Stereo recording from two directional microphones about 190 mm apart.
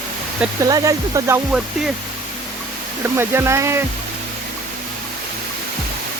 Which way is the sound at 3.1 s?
15° right (ahead or behind).